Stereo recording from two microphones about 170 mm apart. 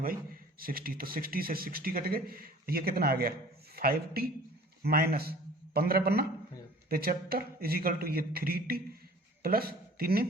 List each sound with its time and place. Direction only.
0.6 s a man's voice: 60° right (ahead or behind)